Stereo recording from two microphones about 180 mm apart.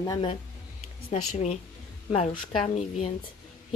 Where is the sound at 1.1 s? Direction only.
40° left (ahead or behind).